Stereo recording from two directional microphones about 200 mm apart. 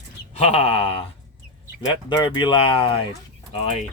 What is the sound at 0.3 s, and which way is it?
Speech, 30° left (ahead or behind).